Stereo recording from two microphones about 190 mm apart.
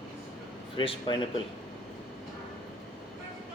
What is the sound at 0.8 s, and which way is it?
Speech, 25° left (ahead or behind).